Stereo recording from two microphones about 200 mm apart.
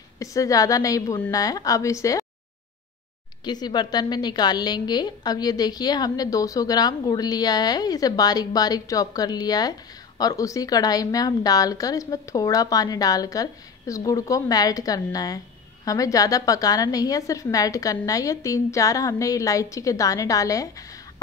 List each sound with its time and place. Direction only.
0.2 s a woman's voice: 15° left (ahead or behind)
3.4 s a woman's voice: 20° left (ahead or behind)